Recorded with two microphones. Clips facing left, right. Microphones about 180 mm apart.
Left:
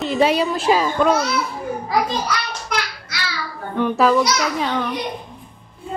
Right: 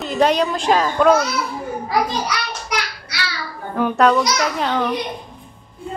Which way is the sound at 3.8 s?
Centre (ahead or behind).